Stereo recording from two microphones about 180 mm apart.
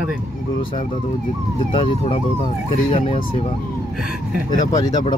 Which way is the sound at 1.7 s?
30° left (ahead or behind).